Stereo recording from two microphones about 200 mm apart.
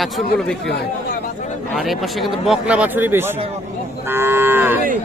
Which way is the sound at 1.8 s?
Centre (ahead or behind).